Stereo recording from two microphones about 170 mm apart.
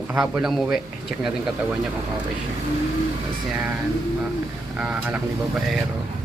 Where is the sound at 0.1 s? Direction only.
5° right (ahead or behind).